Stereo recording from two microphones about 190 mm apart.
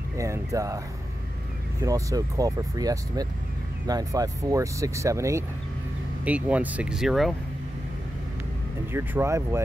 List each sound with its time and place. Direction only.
0.2 s speech: 15° right (ahead or behind)
1.8 s speech: 15° right (ahead or behind); by 7.3 s centre (ahead or behind)
8.9 s speech: 15° right (ahead or behind)